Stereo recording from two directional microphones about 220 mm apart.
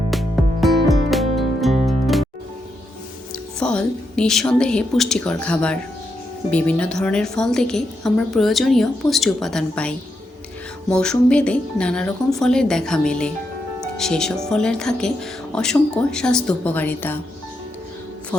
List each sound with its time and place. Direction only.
0.1 s music: centre (ahead or behind)
3.6 s a woman's voice: 5° left (ahead or behind)